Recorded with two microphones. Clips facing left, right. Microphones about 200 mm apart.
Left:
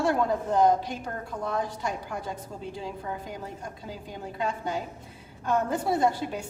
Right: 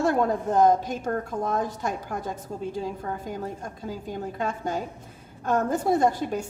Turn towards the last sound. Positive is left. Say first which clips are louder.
# right 3 dB
turn(degrees=-45)  # may be behind; listen again after turning